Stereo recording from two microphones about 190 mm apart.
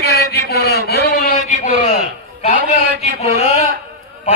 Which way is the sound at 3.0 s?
35° left (ahead or behind).